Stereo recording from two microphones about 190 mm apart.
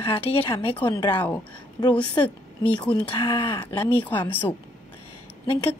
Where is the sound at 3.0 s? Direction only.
25° left (ahead or behind).